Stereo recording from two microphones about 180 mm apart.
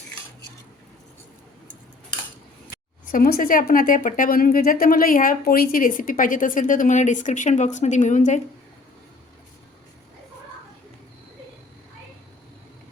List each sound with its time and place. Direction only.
3.1 s a woman's voice: 55° left (ahead or behind)